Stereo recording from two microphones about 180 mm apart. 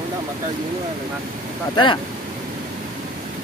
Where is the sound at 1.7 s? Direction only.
25° left (ahead or behind).